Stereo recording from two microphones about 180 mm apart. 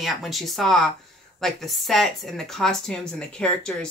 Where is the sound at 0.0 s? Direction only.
Centre (ahead or behind).